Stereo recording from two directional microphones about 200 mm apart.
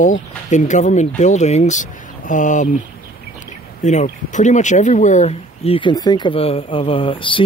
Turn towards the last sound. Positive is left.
turn(degrees=25)  # may be behind; listen again after turning